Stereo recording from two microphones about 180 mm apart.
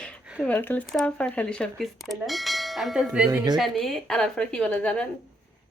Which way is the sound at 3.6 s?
Centre (ahead or behind).